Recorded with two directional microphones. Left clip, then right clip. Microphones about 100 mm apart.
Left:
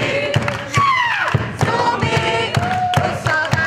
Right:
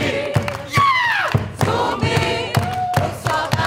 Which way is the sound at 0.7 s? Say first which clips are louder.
Even; 30° left (ahead or behind).